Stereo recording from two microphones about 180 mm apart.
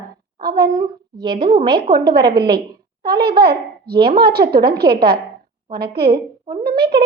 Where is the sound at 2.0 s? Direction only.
60° right (ahead or behind).